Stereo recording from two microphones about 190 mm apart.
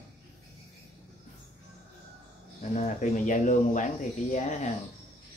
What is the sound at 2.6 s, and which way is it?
Speech, 40° left (ahead or behind).